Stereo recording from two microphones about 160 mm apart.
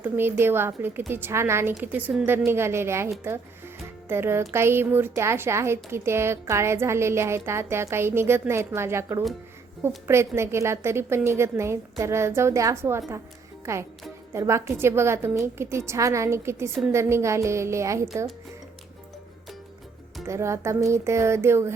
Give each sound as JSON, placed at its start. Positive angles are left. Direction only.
{"t": 0.0, "sound": "a woman's voice", "side_deg": -15}
{"t": 4.1, "sound": "a woman's voice", "side_deg": -15}
{"t": 20.2, "sound": "a woman's voice", "side_deg": -15}